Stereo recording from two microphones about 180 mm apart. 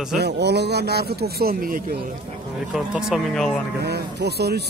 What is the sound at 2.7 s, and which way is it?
Speech, 5° right (ahead or behind).